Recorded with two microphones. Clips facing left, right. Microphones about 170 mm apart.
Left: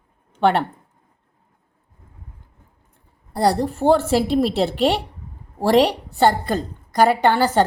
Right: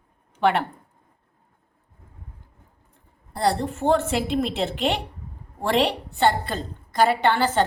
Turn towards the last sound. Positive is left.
turn(degrees=40)  # may be behind; listen again after turning